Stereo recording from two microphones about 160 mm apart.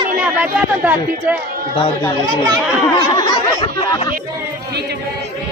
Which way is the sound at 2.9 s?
25° left (ahead or behind).